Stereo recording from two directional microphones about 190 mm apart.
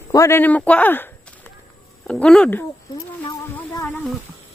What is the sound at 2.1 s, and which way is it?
Speech, 5° left (ahead or behind).